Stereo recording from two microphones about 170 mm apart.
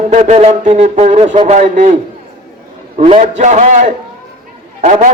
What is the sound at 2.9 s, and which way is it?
A man's voice, 40° right (ahead or behind).